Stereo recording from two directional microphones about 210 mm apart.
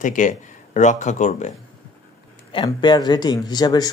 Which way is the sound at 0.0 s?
35° left (ahead or behind).